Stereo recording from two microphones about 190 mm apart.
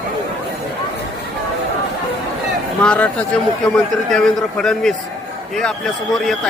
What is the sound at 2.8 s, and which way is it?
A man's voice, 5° left (ahead or behind).